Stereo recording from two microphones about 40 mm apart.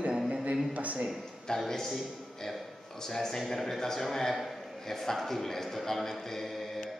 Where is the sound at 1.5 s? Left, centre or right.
Centre.